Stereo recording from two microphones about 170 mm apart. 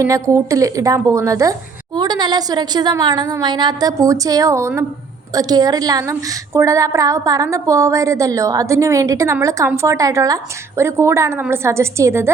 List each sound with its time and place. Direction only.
0.0 s a woman's voice: 15° right (ahead or behind)